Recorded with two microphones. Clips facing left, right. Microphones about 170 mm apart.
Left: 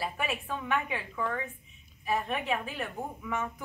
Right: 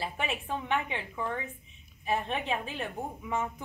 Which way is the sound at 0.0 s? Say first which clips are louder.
Left 1 dB; 20° right (ahead or behind).